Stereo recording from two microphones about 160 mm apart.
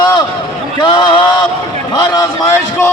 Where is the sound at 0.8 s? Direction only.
25° left (ahead or behind).